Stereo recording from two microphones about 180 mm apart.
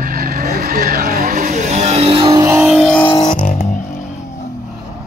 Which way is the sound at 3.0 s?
30° left (ahead or behind).